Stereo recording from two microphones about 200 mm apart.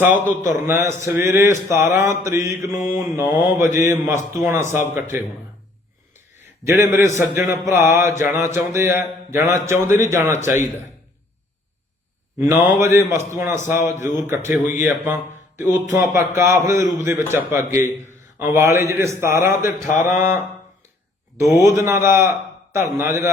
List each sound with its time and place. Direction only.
0.5 s speech: 15° right (ahead or behind)
2.7 s mantra: 40° left (ahead or behind)
3.0 s speech: 15° right (ahead or behind)
6.7 s speech: 15° right (ahead or behind)
12.4 s speech: 10° right (ahead or behind)
21.6 s speech: 15° right (ahead or behind)